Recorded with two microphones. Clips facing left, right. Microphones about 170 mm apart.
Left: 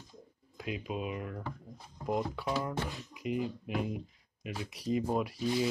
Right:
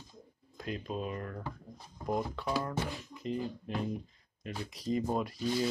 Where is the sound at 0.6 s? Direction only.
5° left (ahead or behind).